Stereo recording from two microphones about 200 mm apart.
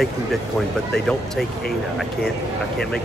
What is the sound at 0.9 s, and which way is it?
Speech, centre (ahead or behind).